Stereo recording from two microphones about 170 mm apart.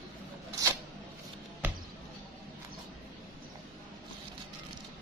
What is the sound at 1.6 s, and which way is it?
Basketball bounce, 10° right (ahead or behind).